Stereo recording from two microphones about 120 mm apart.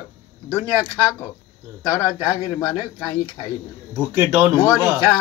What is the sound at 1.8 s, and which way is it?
A man's voice, 25° left (ahead or behind).